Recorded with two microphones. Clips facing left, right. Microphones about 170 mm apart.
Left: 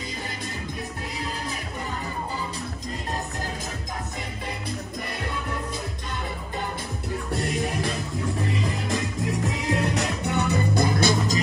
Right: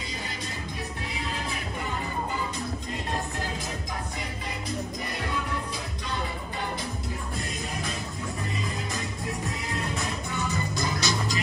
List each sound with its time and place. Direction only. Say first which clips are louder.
9.7 s music: left 8 dB; 85° left; by 11.3 s 55° left (ahead or behind)